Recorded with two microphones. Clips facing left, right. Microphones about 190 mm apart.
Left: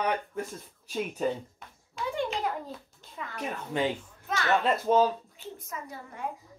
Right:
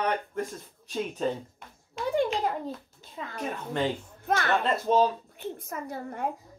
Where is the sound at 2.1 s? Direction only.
35° right (ahead or behind).